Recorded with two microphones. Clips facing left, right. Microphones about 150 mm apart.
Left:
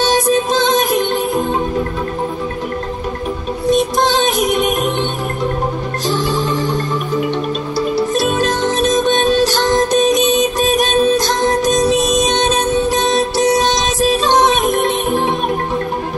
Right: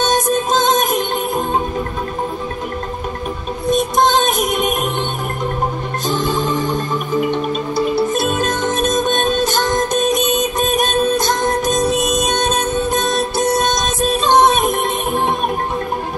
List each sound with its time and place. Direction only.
0.0 s music: 50° right (ahead or behind)
3.7 s music: 50° right (ahead or behind)
6.0 s music: 50° right (ahead or behind)